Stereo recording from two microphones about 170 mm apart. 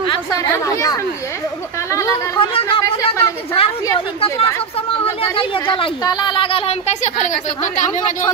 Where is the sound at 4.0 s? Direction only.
35° left (ahead or behind).